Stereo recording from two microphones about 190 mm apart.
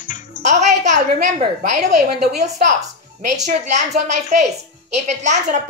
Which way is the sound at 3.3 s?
40° right (ahead or behind).